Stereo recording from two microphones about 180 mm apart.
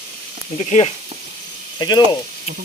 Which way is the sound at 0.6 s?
40° left (ahead or behind).